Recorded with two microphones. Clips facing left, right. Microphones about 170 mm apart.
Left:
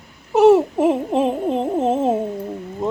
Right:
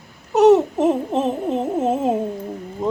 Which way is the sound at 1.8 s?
10° right (ahead or behind).